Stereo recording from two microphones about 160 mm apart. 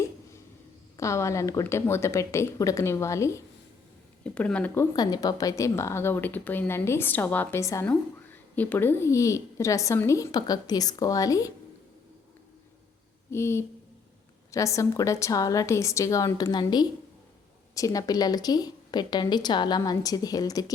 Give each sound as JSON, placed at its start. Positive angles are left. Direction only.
{"t": 0.9, "sound": "a woman's voice", "side_deg": 20}
{"t": 4.2, "sound": "a woman's voice", "side_deg": 5}
{"t": 4.9, "sound": "a woman's voice", "side_deg": 25}
{"t": 13.3, "sound": "a woman's voice", "side_deg": 15}